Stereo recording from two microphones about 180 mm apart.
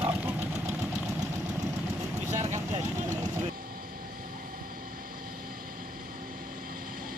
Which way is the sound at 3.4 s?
50° right (ahead or behind).